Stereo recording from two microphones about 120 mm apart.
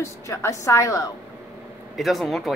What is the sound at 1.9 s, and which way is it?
Speech, centre (ahead or behind).